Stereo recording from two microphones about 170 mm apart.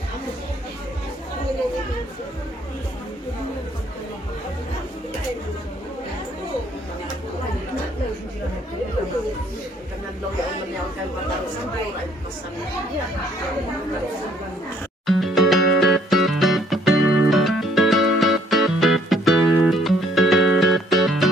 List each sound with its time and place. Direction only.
15.0 s music: centre (ahead or behind)